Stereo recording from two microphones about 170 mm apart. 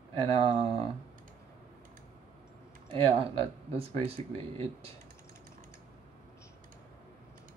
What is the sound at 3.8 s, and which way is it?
Speech, 35° right (ahead or behind).